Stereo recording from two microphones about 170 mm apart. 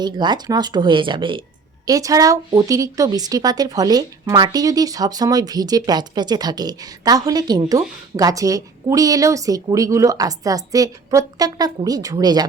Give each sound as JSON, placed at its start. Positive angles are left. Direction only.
{"t": 0.0, "sound": "a woman's voice", "side_deg": -25}